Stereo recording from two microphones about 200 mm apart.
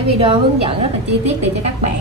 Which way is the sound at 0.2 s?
30° right (ahead or behind).